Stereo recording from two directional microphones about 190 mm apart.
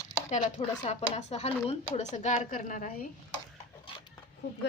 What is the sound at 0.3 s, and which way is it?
Speech, 35° left (ahead or behind).